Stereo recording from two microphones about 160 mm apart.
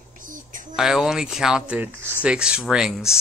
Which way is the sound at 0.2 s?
55° right (ahead or behind).